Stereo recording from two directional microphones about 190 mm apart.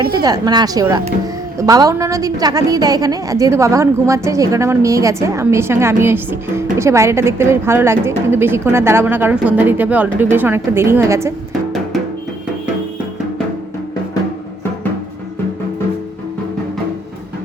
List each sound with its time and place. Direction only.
0.1 s a woman's voice: 20° right (ahead or behind)